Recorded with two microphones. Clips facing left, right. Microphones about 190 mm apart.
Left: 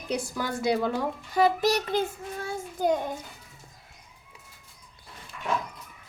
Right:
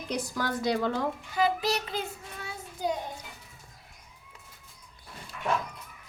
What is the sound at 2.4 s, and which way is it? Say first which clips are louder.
Child singing: left 6 dB; 50° left (ahead or behind).